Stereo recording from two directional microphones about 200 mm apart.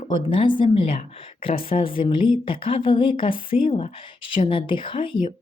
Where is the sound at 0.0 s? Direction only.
25° left (ahead or behind).